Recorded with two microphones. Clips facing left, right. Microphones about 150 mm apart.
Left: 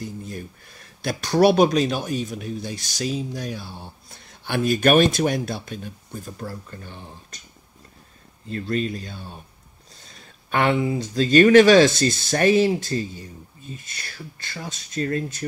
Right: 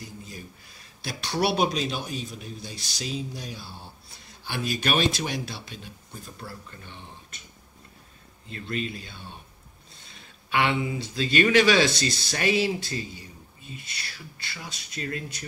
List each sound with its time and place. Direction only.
0.0 s speech: 55° left (ahead or behind)
8.5 s speech: 40° left (ahead or behind)